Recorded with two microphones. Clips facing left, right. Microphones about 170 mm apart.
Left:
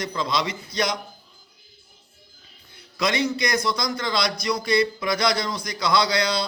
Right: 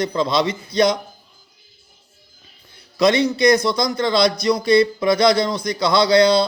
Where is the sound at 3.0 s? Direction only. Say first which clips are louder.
Right 8 dB; 25° right (ahead or behind).